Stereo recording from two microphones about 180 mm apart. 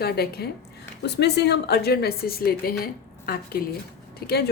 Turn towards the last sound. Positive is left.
turn(degrees=65)  # may be behind; listen again after turning